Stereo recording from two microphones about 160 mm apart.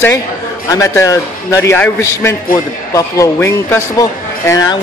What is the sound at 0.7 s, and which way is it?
Speech, 20° left (ahead or behind).